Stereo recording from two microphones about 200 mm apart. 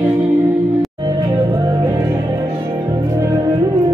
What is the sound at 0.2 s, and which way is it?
Music, 15° right (ahead or behind).